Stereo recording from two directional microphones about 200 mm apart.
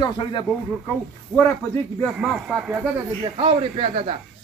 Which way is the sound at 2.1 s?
Centre (ahead or behind).